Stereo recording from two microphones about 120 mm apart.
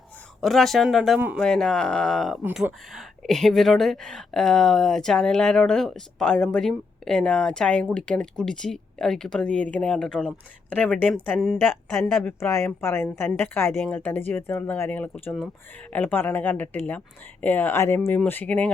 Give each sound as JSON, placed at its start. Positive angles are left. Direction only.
{"t": 0.4, "sound": "speech", "side_deg": 0}
{"t": 12.2, "sound": "a woman's voice", "side_deg": 25}